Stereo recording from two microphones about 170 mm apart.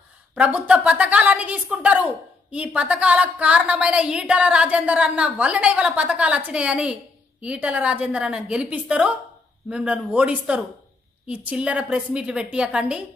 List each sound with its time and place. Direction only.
0.3 s a woman's voice: 5° right (ahead or behind)